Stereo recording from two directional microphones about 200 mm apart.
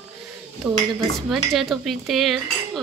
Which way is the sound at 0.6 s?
10° right (ahead or behind).